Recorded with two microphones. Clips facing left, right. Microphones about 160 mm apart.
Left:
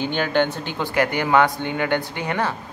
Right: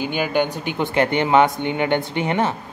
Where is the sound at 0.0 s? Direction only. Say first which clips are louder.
Even; 10° right (ahead or behind).